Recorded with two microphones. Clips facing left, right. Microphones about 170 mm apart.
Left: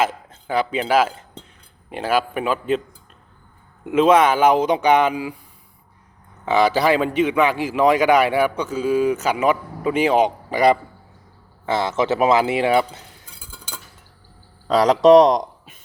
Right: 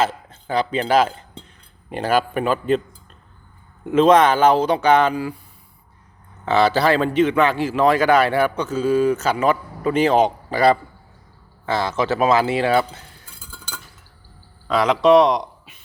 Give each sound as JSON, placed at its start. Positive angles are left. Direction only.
{"t": 0.0, "sound": "a man's voice", "side_deg": 10}
{"t": 3.8, "sound": "a man's voice", "side_deg": 10}
{"t": 6.4, "sound": "a man's voice", "side_deg": 10}
{"t": 13.4, "sound": "chink", "side_deg": 15}
{"t": 14.7, "sound": "speech", "side_deg": 40}